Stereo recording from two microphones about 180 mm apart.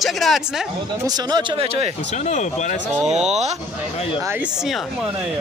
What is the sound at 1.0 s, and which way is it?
Speech, 20° right (ahead or behind).